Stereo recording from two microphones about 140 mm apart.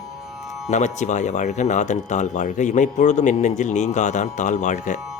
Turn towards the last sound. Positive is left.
turn(degrees=65)  # may be behind; listen again after turning